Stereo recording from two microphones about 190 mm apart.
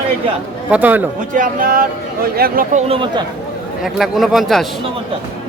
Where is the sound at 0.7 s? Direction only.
10° right (ahead or behind).